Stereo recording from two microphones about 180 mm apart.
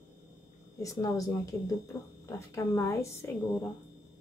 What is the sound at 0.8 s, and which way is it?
A woman's voice, 20° left (ahead or behind).